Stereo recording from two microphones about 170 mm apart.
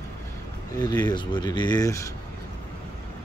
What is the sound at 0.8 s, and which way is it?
Speech, 25° left (ahead or behind).